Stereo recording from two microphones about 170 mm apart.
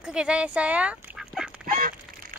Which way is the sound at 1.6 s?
55° right (ahead or behind).